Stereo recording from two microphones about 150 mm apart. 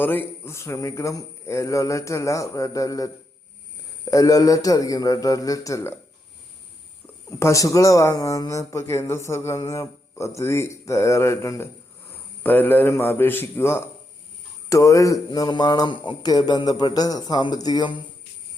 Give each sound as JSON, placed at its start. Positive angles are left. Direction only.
{"t": 0.0, "sound": "a man's voice", "side_deg": 15}
{"t": 7.3, "sound": "a man's voice", "side_deg": 20}